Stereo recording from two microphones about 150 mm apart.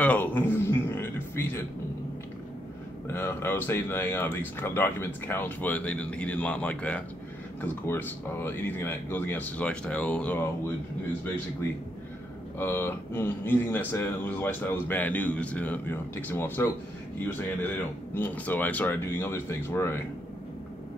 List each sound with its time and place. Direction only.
0.0 s a sound: 10° left (ahead or behind)
3.1 s speech: 15° left (ahead or behind)
12.5 s speech: 15° left (ahead or behind)